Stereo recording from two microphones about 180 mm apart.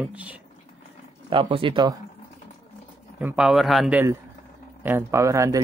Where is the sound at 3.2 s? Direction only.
5° right (ahead or behind).